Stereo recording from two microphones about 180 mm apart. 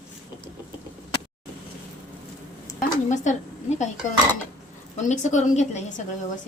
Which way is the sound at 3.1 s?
40° left (ahead or behind).